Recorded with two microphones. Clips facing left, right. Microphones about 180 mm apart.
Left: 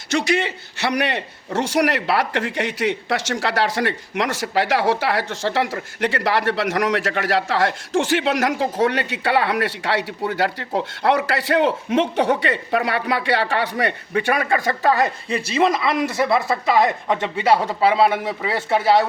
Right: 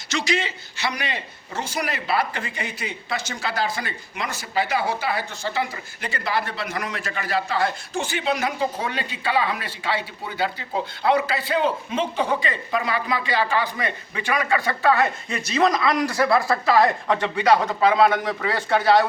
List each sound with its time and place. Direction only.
0.1 s a man's voice: 60° left (ahead or behind); by 19.0 s 25° left (ahead or behind)